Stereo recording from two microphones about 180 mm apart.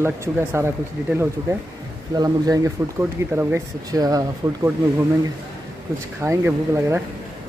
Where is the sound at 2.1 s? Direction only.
20° right (ahead or behind).